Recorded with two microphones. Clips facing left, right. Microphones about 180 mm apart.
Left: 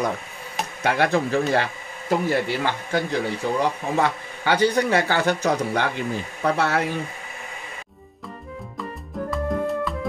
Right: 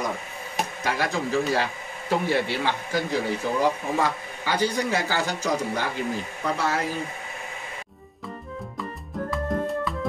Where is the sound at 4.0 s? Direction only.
65° left (ahead or behind).